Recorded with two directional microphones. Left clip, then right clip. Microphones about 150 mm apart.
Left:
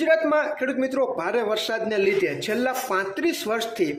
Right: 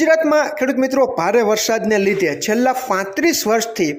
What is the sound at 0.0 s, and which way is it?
A man's voice, 35° right (ahead or behind).